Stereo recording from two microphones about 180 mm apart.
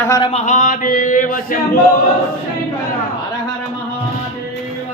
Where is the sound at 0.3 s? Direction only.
45° left (ahead or behind).